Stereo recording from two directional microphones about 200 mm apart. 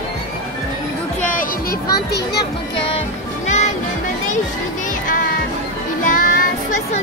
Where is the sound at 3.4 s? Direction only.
35° left (ahead or behind).